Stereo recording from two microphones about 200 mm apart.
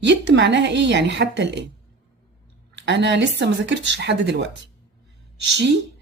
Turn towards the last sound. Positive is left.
turn(degrees=-60)  # may be behind; listen again after turning